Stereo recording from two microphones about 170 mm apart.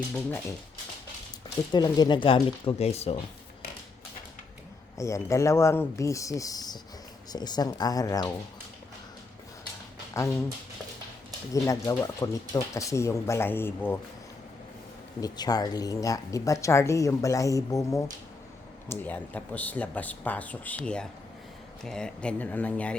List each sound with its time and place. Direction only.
1.7 s speech: 25° left (ahead or behind)
4.9 s speech: 20° left (ahead or behind)
10.2 s speech: 15° left (ahead or behind)
11.5 s speech: 20° left (ahead or behind)
15.2 s speech: 25° left (ahead or behind)